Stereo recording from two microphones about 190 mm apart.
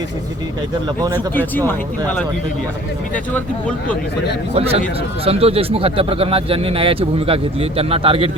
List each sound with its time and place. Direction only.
1.4 s speech: 10° left (ahead or behind)
3.3 s speech: 5° left (ahead or behind)
4.5 s a man's voice: 30° right (ahead or behind)